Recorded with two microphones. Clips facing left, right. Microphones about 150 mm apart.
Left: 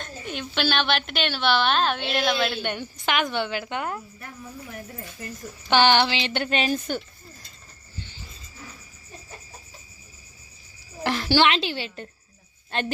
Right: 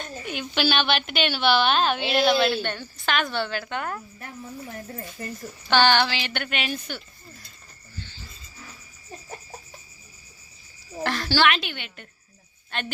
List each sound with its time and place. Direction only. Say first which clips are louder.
0.0 s a woman's voice: right 1 dB; 5° right (ahead or behind)
2.6 s a woman's voice: left 1 dB; 20° left (ahead or behind)
5.6 s speech: left 1 dB; 20° left (ahead or behind); by 7.0 s 40° left (ahead or behind)
7.9 s a sound: even; 15° left (ahead or behind)
11.0 s speech: left 2 dB; 15° left (ahead or behind)